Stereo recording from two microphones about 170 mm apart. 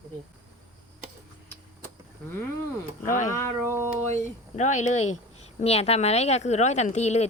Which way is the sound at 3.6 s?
15° right (ahead or behind).